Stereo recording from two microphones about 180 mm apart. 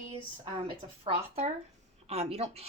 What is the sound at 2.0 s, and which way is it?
Speech, 35° right (ahead or behind).